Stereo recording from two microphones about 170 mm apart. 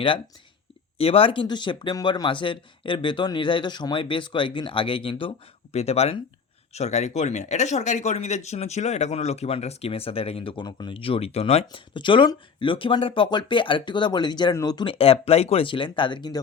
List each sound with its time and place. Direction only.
0.9 s speech: 35° left (ahead or behind)